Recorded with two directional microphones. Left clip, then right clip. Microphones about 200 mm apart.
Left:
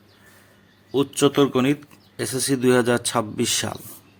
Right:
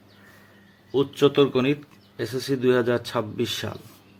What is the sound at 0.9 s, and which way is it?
Speech, 20° left (ahead or behind).